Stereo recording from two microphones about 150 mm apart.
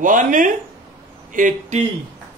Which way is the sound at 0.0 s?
60° right (ahead or behind).